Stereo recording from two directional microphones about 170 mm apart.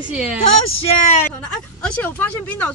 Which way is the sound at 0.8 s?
45° left (ahead or behind).